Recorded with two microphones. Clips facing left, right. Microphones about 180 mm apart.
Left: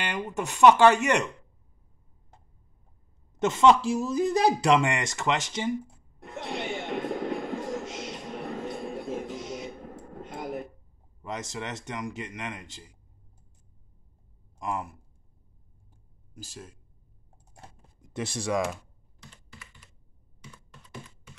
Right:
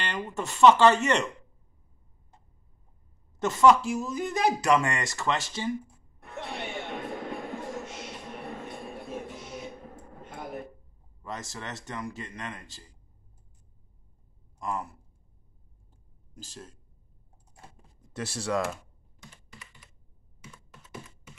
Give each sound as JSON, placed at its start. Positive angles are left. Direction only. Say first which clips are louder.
{"t": 0.0, "sound": "speech", "louder": "left 2 dB", "side_deg": 15}
{"t": 3.3, "sound": "speech", "louder": "even", "side_deg": 20}
{"t": 6.1, "sound": "a sound", "louder": "left 3 dB", "side_deg": 90}
{"t": 11.2, "sound": "speech", "louder": "left 3 dB", "side_deg": 20}
{"t": 14.6, "sound": "speech", "louder": "left 1 dB", "side_deg": 15}
{"t": 16.3, "sound": "speech", "louder": "left 1 dB", "side_deg": 10}
{"t": 18.1, "sound": "speech", "louder": "left 1 dB", "side_deg": 15}